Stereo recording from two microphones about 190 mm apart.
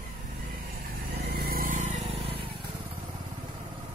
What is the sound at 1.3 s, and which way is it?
Vehicle, 50° right (ahead or behind).